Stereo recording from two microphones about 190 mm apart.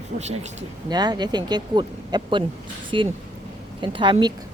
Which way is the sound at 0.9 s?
20° right (ahead or behind).